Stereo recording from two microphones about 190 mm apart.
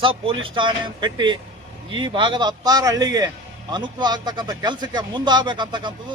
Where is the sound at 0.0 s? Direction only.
30° right (ahead or behind).